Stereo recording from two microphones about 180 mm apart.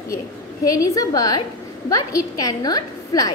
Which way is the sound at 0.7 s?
20° left (ahead or behind).